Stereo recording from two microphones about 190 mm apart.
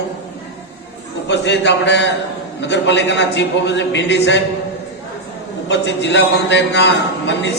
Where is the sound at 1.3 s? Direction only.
65° left (ahead or behind).